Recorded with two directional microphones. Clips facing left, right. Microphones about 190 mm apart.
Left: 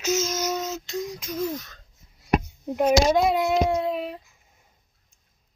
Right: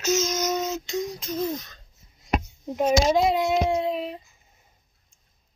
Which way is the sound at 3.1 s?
Centre (ahead or behind).